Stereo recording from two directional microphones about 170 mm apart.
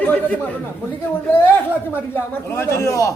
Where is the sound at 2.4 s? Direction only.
15° left (ahead or behind).